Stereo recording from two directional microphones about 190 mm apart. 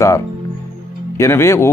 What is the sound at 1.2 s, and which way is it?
Speech, 15° left (ahead or behind).